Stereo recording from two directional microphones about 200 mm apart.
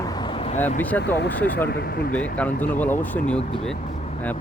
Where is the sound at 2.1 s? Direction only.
5° left (ahead or behind).